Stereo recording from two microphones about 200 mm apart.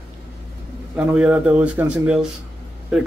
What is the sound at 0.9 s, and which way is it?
Speech, 5° right (ahead or behind).